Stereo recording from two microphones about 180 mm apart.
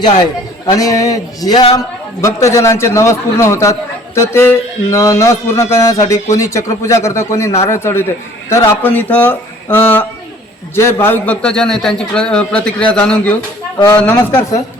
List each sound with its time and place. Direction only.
0.2 s a man's voice: 20° left (ahead or behind)